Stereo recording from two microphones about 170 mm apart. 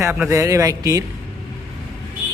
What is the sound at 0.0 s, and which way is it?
A man's voice, 15° right (ahead or behind).